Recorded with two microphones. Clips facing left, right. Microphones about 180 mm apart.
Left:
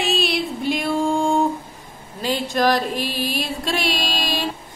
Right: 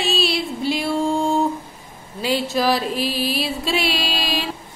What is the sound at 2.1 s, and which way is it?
Speech, 45° left (ahead or behind).